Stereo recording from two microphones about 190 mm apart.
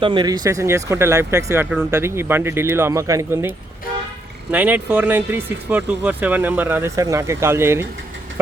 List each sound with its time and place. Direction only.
0.0 s speech: 25° right (ahead or behind)
4.5 s speech: 10° right (ahead or behind)